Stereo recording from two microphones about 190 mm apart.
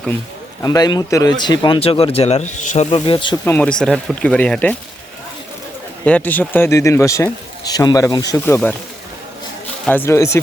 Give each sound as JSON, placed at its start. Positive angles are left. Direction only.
{"t": 0.6, "sound": "speech", "side_deg": 20}
{"t": 3.4, "sound": "speech", "side_deg": 10}
{"t": 6.1, "sound": "a man's voice", "side_deg": 10}
{"t": 9.8, "sound": "a man's voice", "side_deg": 10}